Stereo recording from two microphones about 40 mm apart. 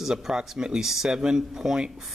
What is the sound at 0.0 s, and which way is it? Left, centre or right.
Speech, centre.